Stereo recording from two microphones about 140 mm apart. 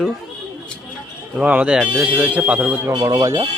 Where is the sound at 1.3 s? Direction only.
10° right (ahead or behind).